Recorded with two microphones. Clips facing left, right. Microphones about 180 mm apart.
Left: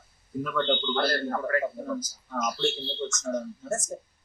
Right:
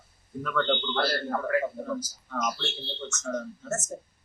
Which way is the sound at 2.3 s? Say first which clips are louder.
Left 4 dB; 10° left (ahead or behind).